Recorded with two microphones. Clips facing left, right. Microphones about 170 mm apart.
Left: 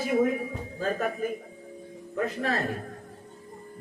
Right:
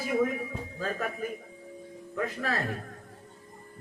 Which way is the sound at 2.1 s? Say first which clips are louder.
Left 3 dB; 30° left (ahead or behind).